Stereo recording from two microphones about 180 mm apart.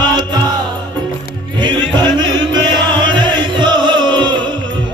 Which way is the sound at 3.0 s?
25° right (ahead or behind).